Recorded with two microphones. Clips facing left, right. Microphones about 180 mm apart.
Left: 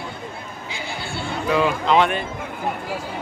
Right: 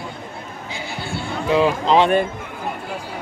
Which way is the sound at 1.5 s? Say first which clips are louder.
Right 3 dB; 30° right (ahead or behind).